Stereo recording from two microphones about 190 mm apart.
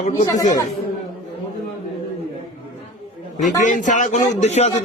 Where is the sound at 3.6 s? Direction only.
40° left (ahead or behind).